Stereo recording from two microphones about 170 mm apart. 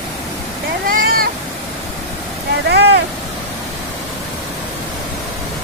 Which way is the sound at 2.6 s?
85° right.